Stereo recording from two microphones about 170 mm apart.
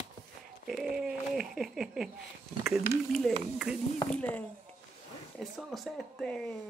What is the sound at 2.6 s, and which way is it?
Speech, centre (ahead or behind).